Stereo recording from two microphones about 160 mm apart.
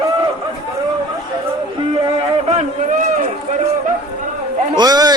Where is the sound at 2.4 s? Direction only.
50° right (ahead or behind).